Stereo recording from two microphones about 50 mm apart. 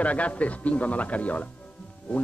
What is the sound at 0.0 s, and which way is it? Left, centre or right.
Speech, left.